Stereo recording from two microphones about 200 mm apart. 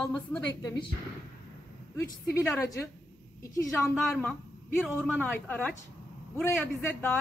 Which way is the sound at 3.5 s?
15° left (ahead or behind).